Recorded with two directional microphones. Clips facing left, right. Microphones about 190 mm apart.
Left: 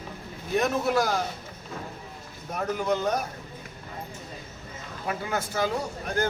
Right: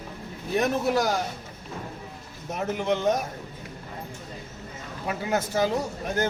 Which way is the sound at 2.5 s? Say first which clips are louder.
Right 1 dB; 25° right (ahead or behind).